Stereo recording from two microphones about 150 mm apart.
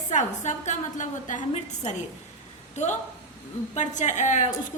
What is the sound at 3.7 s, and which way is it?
Speech, 50° left (ahead or behind).